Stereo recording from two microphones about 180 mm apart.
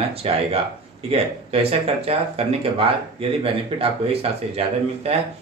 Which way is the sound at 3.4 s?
30° right (ahead or behind).